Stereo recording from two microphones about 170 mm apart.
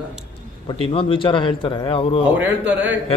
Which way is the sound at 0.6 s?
35° left (ahead or behind).